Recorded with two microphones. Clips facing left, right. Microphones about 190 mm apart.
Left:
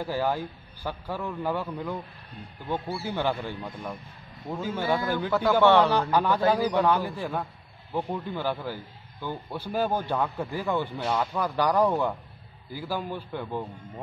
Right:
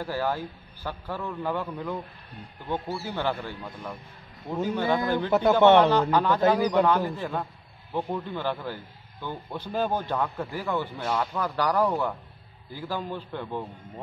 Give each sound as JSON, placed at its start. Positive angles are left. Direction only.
{"t": 0.0, "sound": "speech", "side_deg": 15}
{"t": 4.6, "sound": "speech", "side_deg": -20}
{"t": 6.1, "sound": "speech", "side_deg": 10}
{"t": 6.6, "sound": "a man's voice", "side_deg": -15}
{"t": 7.1, "sound": "speech", "side_deg": 10}